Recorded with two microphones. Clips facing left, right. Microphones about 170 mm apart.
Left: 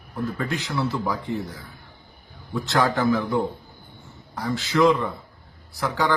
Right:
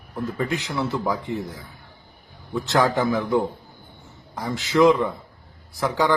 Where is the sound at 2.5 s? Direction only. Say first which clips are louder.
Right 2 dB; 20° right (ahead or behind).